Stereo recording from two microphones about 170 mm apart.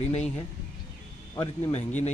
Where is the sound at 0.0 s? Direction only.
40° left (ahead or behind).